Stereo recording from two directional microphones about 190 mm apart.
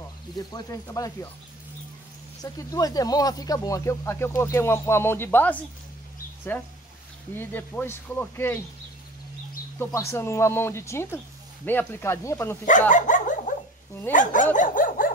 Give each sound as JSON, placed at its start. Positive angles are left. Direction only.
{"t": 0.4, "sound": "speech", "side_deg": 20}
{"t": 2.4, "sound": "speech", "side_deg": 20}
{"t": 9.9, "sound": "speech", "side_deg": 15}
{"t": 12.9, "sound": "dog", "side_deg": 40}